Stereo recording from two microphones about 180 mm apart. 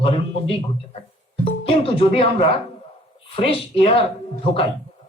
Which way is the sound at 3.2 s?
30° left (ahead or behind).